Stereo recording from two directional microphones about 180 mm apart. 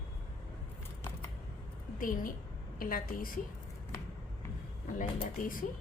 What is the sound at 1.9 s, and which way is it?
A woman's voice, 50° left (ahead or behind).